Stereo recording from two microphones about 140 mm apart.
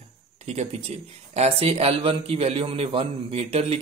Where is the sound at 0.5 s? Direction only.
50° right (ahead or behind).